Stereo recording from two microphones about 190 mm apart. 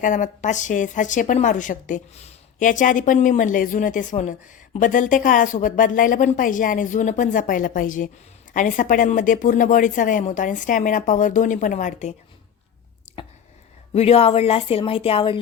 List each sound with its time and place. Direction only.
0.0 s a woman's voice: 40° left (ahead or behind)
13.1 s a sound: 30° left (ahead or behind)
13.9 s speech: 30° left (ahead or behind)